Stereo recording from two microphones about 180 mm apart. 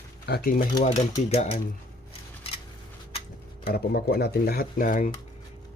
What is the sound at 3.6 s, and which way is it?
Speech, 55° left (ahead or behind).